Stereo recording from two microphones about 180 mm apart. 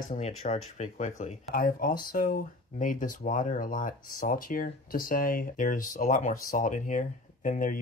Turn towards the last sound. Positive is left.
turn(degrees=50)  # may be behind; listen again after turning